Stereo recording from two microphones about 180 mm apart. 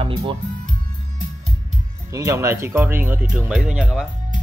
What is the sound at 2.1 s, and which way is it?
Speech, 15° right (ahead or behind).